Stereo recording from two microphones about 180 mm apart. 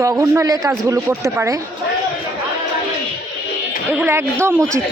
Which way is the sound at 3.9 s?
10° right (ahead or behind).